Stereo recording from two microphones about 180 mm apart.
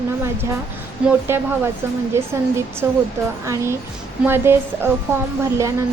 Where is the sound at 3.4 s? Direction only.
15° right (ahead or behind).